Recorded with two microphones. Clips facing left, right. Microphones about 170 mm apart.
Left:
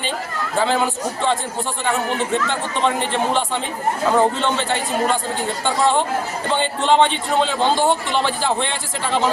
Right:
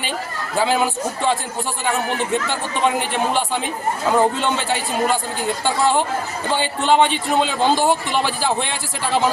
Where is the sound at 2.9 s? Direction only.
10° right (ahead or behind).